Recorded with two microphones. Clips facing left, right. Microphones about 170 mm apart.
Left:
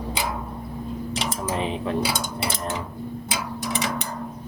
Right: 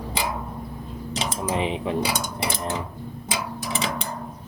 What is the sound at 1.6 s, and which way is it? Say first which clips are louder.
Speech: right 1 dB; 15° right (ahead or behind).